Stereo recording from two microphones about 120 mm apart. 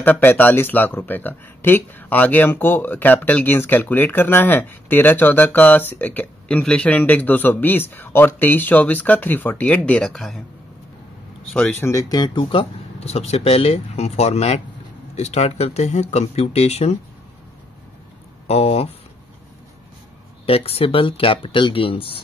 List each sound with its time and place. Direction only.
0.0 s speech: 15° left (ahead or behind)
11.8 s speech: 25° left (ahead or behind); by 16.9 s 60° left (ahead or behind)
18.5 s speech: 55° left (ahead or behind)
20.4 s speech: 55° left (ahead or behind)